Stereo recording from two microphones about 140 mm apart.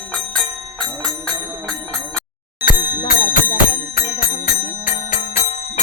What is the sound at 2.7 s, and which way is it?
Bicycle bell, 30° left (ahead or behind).